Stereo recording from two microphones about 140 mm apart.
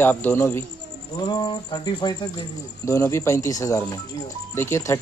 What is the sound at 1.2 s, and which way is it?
Speech, 30° left (ahead or behind).